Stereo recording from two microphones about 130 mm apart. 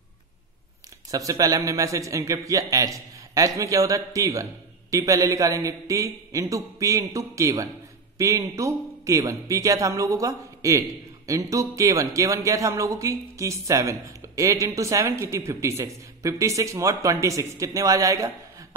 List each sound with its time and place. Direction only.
1.1 s a man's voice: 25° right (ahead or behind)